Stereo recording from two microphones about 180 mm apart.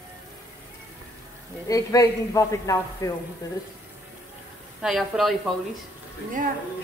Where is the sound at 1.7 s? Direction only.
20° left (ahead or behind).